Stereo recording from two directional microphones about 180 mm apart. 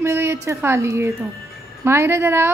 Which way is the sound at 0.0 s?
15° right (ahead or behind).